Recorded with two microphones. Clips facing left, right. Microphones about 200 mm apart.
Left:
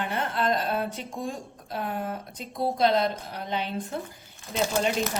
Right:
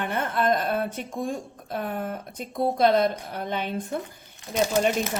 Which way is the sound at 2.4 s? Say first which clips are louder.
Right 3 dB; 50° right (ahead or behind).